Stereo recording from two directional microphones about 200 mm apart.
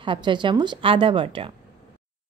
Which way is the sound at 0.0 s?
25° right (ahead or behind).